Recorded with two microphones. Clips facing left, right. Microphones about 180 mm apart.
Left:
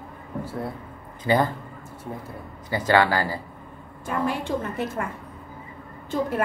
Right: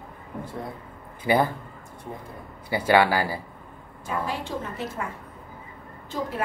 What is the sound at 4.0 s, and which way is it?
A woman's voice, 55° left (ahead or behind).